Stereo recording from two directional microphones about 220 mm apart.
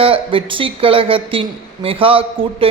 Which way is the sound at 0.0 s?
25° right (ahead or behind).